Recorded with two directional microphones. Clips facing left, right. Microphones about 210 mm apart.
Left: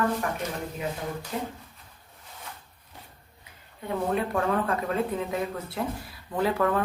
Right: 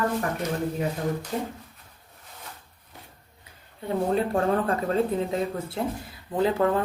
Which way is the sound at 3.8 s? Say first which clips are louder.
Right 3 dB; 30° right (ahead or behind).